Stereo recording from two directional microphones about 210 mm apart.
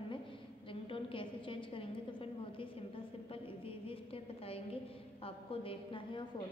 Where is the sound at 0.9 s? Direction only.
25° left (ahead or behind).